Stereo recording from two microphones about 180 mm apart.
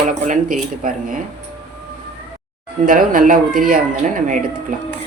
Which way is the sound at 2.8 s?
50° right (ahead or behind).